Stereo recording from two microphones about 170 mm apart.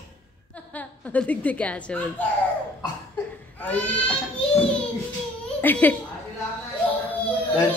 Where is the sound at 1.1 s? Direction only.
10° left (ahead or behind).